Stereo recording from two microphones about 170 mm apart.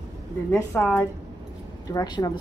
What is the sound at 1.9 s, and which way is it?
Speech, 25° left (ahead or behind).